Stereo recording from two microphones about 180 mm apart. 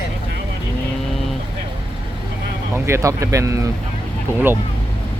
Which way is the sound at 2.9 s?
15° right (ahead or behind).